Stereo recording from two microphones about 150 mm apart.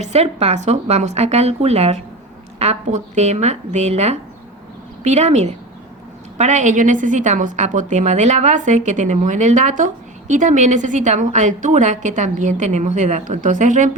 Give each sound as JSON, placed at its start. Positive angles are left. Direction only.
{"t": 0.0, "sound": "a woman's voice", "side_deg": -45}